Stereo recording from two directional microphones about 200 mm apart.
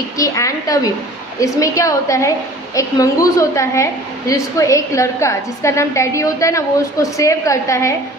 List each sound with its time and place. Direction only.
0.2 s a woman's voice: 15° left (ahead or behind)